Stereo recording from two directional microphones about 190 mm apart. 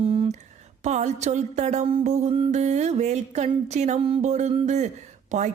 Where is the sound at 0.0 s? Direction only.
30° right (ahead or behind).